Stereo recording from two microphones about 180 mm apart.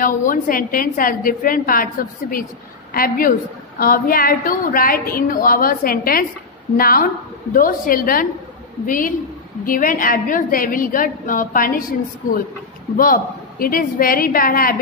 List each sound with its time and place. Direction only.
0.0 s a woman's voice: 50° left (ahead or behind)
12.9 s a woman's voice: 50° left (ahead or behind)